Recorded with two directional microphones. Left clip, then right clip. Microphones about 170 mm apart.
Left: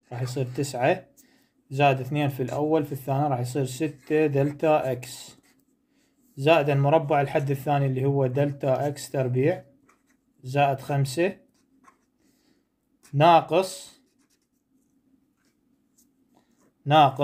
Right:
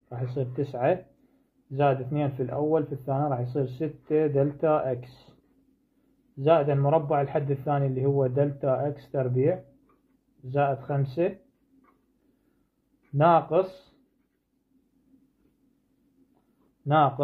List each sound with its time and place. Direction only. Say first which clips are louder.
0.1 s speech: left 1 dB; 25° left (ahead or behind)
13.2 s speech: left 3 dB; 25° left (ahead or behind)
16.8 s speech: left 4 dB; 25° left (ahead or behind)